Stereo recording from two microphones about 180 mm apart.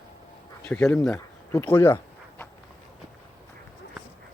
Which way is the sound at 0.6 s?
10° left (ahead or behind).